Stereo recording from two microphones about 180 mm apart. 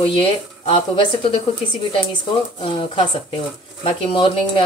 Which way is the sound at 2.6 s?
30° left (ahead or behind).